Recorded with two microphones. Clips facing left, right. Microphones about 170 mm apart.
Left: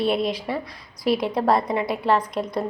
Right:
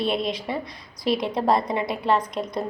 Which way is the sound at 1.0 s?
5° left (ahead or behind).